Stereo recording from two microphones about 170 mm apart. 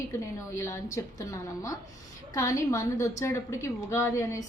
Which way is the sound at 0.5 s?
20° left (ahead or behind).